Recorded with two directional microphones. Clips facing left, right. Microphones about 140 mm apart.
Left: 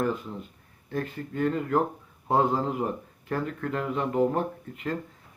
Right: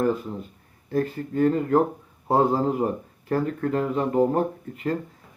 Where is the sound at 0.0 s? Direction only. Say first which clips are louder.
Right 5 dB; 40° right (ahead or behind).